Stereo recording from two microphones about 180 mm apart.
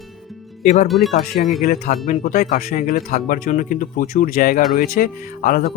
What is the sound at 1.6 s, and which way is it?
Speech, 55° left (ahead or behind).